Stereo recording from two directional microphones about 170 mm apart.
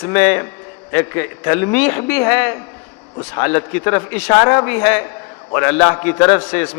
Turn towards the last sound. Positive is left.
turn(degrees=10)  # may be behind; listen again after turning